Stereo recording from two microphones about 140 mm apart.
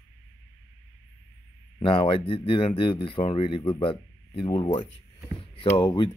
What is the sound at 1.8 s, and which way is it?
Speech, 35° left (ahead or behind).